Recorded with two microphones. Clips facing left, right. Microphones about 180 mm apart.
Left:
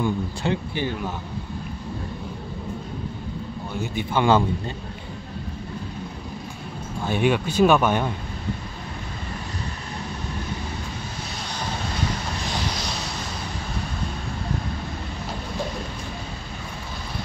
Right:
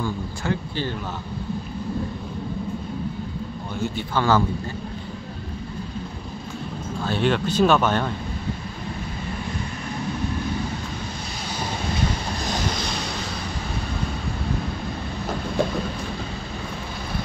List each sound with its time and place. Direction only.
0.0 s speech: 20° left (ahead or behind)
3.9 s speech: 20° left (ahead or behind)
7.0 s speech: 15° left (ahead or behind)